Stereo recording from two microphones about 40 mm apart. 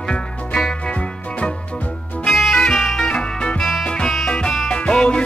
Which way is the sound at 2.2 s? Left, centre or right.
Centre.